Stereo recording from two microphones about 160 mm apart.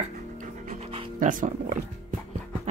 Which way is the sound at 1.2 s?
55° right (ahead or behind).